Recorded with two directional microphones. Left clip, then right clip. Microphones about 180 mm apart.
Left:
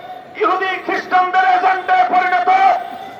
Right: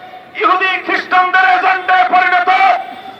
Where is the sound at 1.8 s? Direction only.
10° left (ahead or behind).